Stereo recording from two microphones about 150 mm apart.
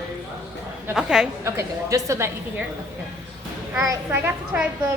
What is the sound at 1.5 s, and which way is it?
Speech, 20° right (ahead or behind).